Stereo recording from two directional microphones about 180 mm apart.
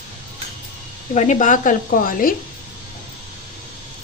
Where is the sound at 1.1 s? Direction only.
45° left (ahead or behind).